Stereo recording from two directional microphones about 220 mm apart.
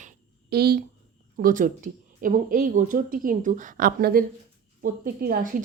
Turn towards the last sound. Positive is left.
turn(degrees=-40)  # may be behind; listen again after turning